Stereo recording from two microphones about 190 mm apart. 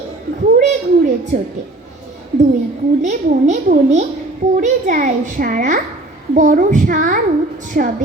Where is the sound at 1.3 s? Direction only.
45° right (ahead or behind).